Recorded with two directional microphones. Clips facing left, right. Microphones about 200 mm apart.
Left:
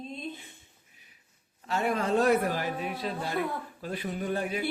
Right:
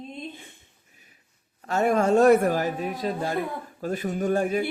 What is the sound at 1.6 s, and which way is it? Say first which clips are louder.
A man's voice: right 7 dB; 45° right (ahead or behind).